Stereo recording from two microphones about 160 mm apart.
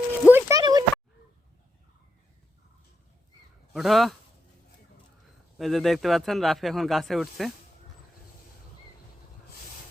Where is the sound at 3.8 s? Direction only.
Centre (ahead or behind).